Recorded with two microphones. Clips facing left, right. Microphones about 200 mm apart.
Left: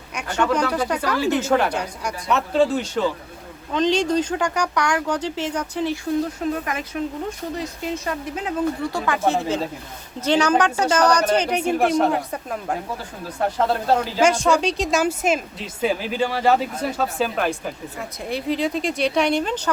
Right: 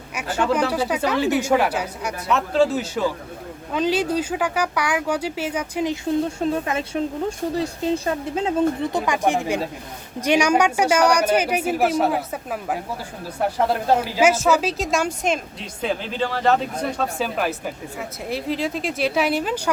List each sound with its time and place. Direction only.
0.1 s a sound: 5° right (ahead or behind)
0.7 s speech: 10° right (ahead or behind)
6.2 s speech: 30° right (ahead or behind); by 19.7 s 10° right (ahead or behind)